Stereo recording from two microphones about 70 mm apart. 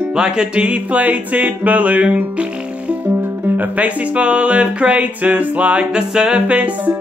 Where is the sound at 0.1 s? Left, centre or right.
Centre.